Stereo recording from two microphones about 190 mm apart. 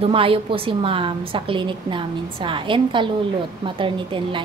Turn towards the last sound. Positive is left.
turn(degrees=-25)  # may be behind; listen again after turning